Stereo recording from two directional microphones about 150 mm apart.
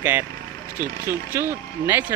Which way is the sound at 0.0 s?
15° right (ahead or behind).